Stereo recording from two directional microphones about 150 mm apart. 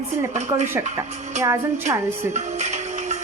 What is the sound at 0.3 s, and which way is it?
Speech, 50° right (ahead or behind).